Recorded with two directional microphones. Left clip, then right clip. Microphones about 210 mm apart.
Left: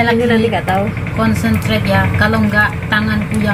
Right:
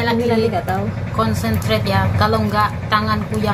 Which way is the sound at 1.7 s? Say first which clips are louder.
Left 3 dB; 55° right (ahead or behind).